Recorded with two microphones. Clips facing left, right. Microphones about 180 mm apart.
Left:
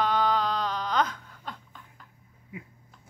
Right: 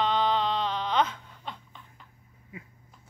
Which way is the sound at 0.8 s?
5° right (ahead or behind).